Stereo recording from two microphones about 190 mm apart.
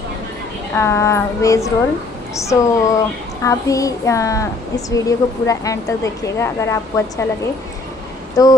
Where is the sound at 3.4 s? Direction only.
15° left (ahead or behind).